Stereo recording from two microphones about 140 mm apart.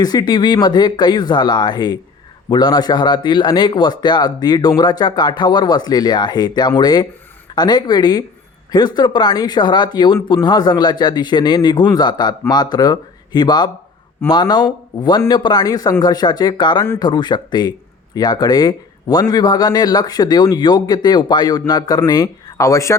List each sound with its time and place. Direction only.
0.0 s speech: 30° left (ahead or behind)